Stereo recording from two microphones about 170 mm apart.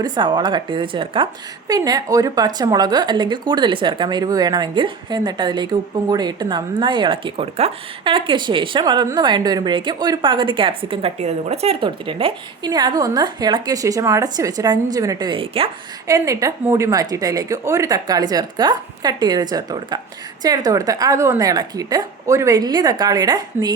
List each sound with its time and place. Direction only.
0.0 s a woman's voice: 25° right (ahead or behind)
16.0 s a woman's voice: 20° right (ahead or behind)